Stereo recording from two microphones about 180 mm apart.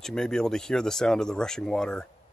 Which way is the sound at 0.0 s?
5° left (ahead or behind).